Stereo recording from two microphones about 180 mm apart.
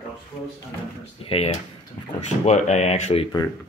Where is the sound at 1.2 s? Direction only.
35° left (ahead or behind).